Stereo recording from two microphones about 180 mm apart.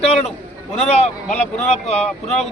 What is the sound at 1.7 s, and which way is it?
Speech, 35° left (ahead or behind).